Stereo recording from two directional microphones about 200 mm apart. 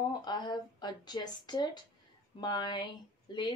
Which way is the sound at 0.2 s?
20° left (ahead or behind).